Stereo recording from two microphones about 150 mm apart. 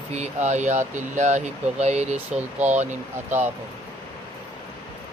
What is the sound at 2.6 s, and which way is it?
Speech, 50° right (ahead or behind).